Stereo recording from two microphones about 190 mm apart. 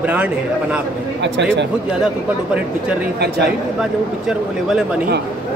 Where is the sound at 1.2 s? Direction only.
65° right (ahead or behind).